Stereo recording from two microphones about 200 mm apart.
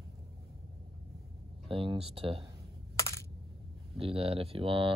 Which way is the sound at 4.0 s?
30° right (ahead or behind).